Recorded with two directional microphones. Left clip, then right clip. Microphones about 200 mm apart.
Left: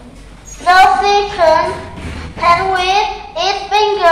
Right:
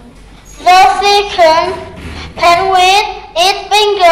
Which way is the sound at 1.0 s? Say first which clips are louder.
Right 3 dB; 30° right (ahead or behind).